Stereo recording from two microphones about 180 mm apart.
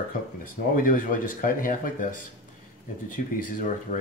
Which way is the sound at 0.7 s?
50° left (ahead or behind).